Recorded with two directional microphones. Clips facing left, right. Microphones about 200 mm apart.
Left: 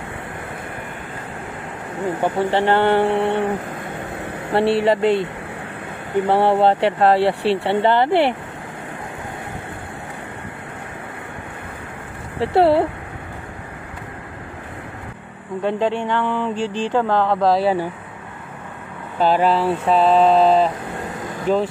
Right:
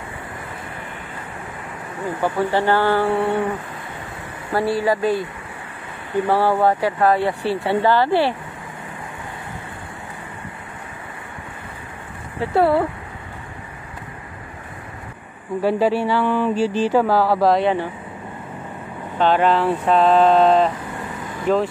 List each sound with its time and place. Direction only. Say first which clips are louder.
2.0 s speech: left 1 dB; 25° left (ahead or behind)
4.8 s speech: left 3 dB; 25° left (ahead or behind)
12.4 s speech: left 2 dB; 30° left (ahead or behind)
15.6 s speech: right 2 dB; 5° right (ahead or behind)
19.1 s a sound: even; 5° left (ahead or behind)